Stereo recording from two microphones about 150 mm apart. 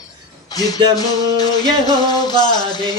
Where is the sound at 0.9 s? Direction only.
25° left (ahead or behind).